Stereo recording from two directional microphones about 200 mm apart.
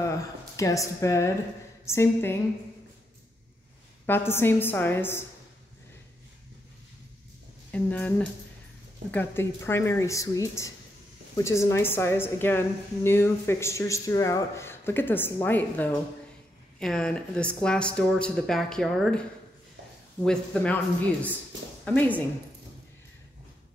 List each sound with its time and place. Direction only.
0.0 s a woman's voice: 15° left (ahead or behind)
4.3 s a woman's voice: 10° left (ahead or behind)
7.7 s a woman's voice: 10° left (ahead or behind)
9.1 s a woman's voice: 10° left (ahead or behind)